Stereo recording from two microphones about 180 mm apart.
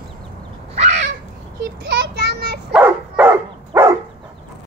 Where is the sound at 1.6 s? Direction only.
70° right (ahead or behind).